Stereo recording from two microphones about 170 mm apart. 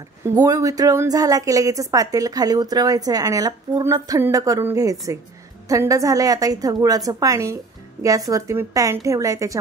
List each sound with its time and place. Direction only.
0.2 s a woman's voice: 20° right (ahead or behind)